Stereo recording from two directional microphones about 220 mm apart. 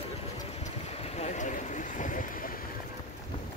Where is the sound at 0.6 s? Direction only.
30° left (ahead or behind).